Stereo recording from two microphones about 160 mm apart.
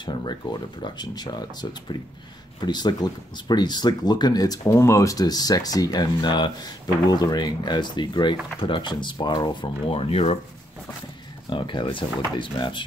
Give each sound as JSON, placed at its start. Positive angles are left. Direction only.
{"t": 0.0, "sound": "speech", "side_deg": 30}
{"t": 11.5, "sound": "speech", "side_deg": 30}